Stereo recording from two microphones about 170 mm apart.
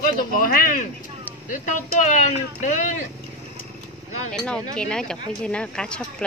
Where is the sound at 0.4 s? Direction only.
55° left (ahead or behind).